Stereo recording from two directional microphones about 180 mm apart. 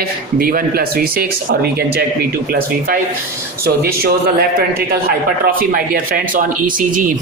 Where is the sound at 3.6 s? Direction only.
60° right (ahead or behind).